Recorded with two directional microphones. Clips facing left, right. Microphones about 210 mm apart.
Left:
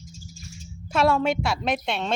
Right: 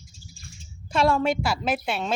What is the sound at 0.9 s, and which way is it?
Speech, centre (ahead or behind).